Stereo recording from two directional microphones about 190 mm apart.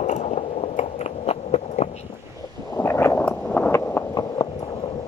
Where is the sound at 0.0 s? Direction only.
35° left (ahead or behind).